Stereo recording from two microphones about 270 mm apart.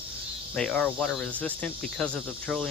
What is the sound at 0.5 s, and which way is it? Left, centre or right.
Speech, centre.